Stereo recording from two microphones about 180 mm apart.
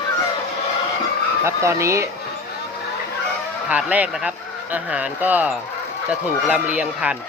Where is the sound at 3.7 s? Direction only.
5° right (ahead or behind).